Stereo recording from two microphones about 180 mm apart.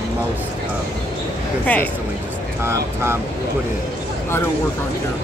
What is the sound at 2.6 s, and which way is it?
Speech, 15° right (ahead or behind).